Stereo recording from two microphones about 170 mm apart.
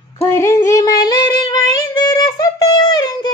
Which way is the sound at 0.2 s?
15° left (ahead or behind).